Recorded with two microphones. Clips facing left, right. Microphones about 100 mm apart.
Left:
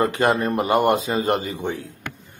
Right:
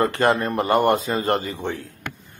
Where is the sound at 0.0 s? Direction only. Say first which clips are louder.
Even; 15° left (ahead or behind).